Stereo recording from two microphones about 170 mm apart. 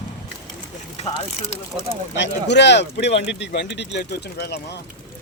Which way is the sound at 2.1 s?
90° left.